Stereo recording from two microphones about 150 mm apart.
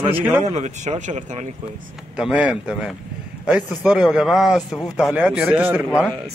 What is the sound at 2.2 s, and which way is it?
A man's voice, 5° right (ahead or behind).